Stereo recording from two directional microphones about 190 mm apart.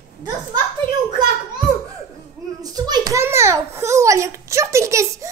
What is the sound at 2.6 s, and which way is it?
A child's voice, 20° right (ahead or behind).